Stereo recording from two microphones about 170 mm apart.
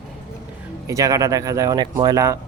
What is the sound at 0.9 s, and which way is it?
Speech, 20° right (ahead or behind).